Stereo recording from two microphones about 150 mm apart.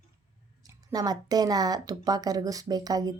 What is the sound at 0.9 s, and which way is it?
A woman's voice, 25° right (ahead or behind).